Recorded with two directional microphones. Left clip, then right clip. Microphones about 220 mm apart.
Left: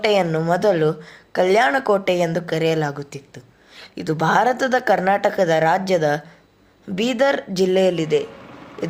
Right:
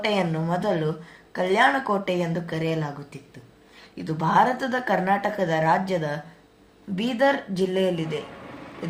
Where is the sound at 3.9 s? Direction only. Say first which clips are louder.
Left 3 dB; 50° left (ahead or behind).